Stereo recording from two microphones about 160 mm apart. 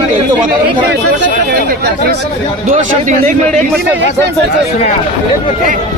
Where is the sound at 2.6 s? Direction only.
50° right (ahead or behind).